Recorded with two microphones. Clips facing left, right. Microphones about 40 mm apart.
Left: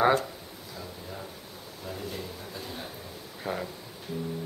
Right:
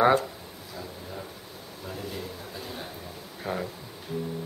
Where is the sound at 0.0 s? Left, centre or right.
Centre.